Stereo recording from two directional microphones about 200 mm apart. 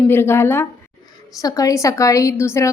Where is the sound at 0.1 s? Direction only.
10° left (ahead or behind).